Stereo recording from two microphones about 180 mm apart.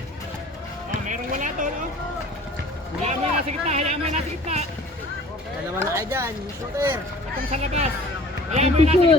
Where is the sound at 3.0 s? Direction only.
35° right (ahead or behind).